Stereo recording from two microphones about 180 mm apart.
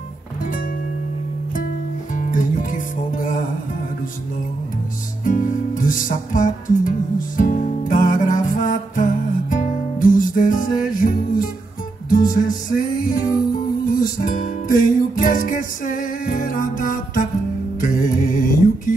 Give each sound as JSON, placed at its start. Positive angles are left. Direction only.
{"t": 2.1, "sound": "music", "side_deg": 45}
{"t": 5.2, "sound": "music", "side_deg": 45}
{"t": 13.9, "sound": "music", "side_deg": 20}
{"t": 14.2, "sound": "music", "side_deg": 50}